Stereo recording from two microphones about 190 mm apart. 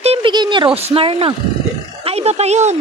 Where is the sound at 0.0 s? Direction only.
30° right (ahead or behind).